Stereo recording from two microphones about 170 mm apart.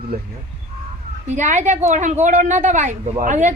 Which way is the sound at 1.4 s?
45° right (ahead or behind).